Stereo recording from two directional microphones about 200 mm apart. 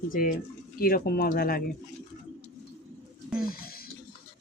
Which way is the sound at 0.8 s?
50° left (ahead or behind).